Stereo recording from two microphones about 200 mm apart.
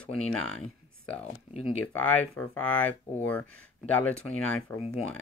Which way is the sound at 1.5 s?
30° left (ahead or behind).